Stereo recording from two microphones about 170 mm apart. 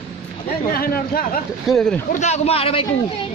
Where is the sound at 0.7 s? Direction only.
65° left (ahead or behind).